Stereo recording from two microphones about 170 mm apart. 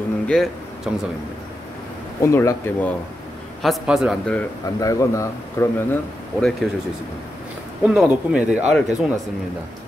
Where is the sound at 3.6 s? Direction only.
Centre (ahead or behind).